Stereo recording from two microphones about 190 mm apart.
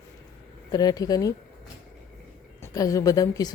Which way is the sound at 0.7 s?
20° left (ahead or behind).